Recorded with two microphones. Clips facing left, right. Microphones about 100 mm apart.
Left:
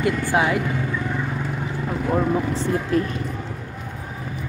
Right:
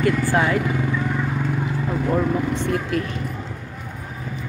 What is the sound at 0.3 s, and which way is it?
Speech, 10° left (ahead or behind).